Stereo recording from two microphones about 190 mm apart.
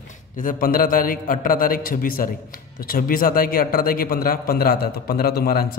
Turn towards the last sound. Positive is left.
turn(degrees=55)  # may be behind; listen again after turning